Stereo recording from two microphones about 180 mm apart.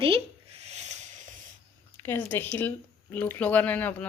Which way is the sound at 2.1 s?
10° left (ahead or behind).